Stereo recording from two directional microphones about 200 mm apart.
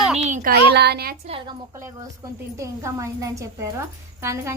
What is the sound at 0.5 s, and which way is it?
Speech, 55° right (ahead or behind).